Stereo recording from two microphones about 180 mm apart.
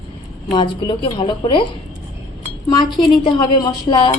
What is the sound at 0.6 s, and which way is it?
A woman's voice, 25° left (ahead or behind).